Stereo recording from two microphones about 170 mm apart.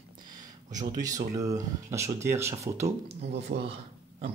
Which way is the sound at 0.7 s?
45° right (ahead or behind).